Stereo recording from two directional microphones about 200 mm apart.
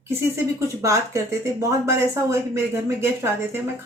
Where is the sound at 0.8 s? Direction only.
15° right (ahead or behind).